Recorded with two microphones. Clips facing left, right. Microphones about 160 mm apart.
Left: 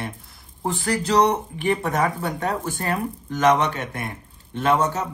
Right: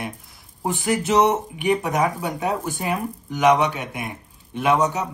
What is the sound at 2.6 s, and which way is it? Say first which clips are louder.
A man's voice: even; 15° right (ahead or behind).